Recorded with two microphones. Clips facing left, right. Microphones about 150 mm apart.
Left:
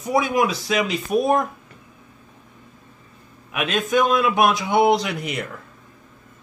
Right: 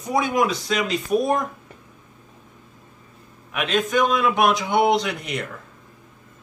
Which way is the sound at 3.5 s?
10° left (ahead or behind).